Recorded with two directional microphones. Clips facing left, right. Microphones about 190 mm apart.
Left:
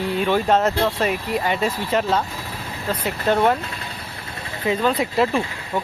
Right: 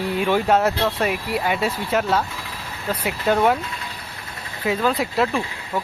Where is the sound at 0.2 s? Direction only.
10° right (ahead or behind).